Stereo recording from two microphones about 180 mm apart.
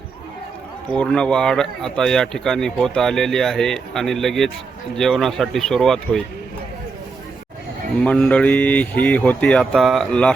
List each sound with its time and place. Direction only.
0.9 s speech: 5° left (ahead or behind)
8.0 s speech: 5° left (ahead or behind)